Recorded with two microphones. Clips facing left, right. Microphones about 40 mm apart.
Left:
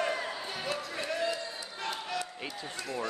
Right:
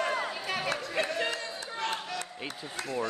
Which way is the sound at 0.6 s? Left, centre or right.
Right.